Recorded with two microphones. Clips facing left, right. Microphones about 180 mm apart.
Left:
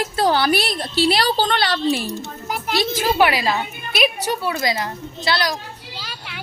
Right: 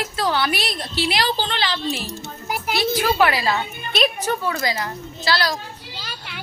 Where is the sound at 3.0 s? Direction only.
15° left (ahead or behind).